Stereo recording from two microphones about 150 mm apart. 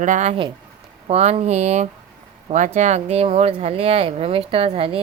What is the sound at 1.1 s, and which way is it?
Speech, 45° right (ahead or behind).